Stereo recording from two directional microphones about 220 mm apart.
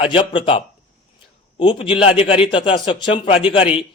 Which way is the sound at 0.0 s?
25° left (ahead or behind).